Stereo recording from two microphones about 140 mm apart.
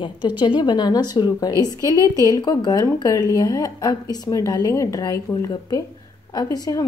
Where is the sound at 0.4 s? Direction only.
35° left (ahead or behind).